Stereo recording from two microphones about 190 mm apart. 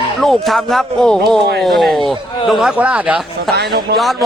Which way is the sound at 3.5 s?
55° right (ahead or behind).